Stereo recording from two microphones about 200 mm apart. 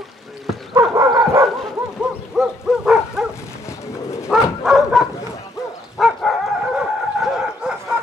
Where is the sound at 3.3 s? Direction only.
15° left (ahead or behind).